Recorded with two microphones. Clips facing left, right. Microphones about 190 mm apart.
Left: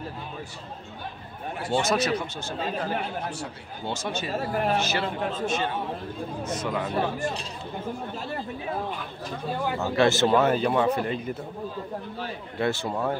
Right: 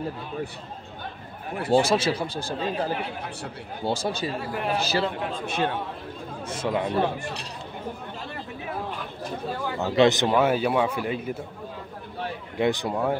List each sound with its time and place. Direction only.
1.7 s speech: 30° right (ahead or behind)
4.3 s speech: 45° left (ahead or behind)
4.7 s speech: 35° right (ahead or behind)
5.5 s speech: 60° right (ahead or behind)
6.4 s speech: 30° right (ahead or behind)
9.8 s speech: 20° right (ahead or behind)
12.5 s speech: 15° right (ahead or behind)